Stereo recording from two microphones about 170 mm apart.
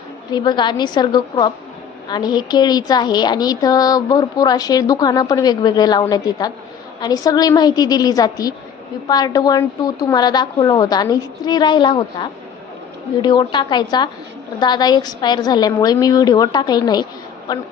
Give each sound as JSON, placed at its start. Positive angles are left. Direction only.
{"t": 0.3, "sound": "a woman's voice", "side_deg": 25}